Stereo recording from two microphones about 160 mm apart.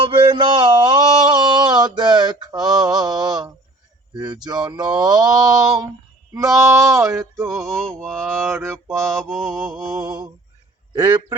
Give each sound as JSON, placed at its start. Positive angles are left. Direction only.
{"t": 0.1, "sound": "a sound", "side_deg": -30}
{"t": 4.1, "sound": "speech", "side_deg": -25}
{"t": 7.4, "sound": "mantra", "side_deg": 0}
{"t": 8.4, "sound": "speech", "side_deg": -15}
{"t": 9.3, "sound": "mantra", "side_deg": 0}
{"t": 9.9, "sound": "a man's voice", "side_deg": -20}